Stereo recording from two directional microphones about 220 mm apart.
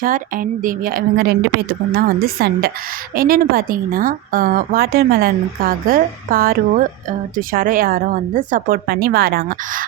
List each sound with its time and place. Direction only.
0.0 s a woman's voice: 40° right (ahead or behind)